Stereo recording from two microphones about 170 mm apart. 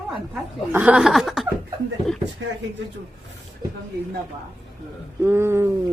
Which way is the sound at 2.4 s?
90° right.